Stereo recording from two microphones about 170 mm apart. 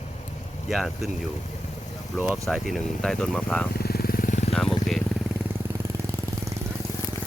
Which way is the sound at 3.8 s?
65° left (ahead or behind).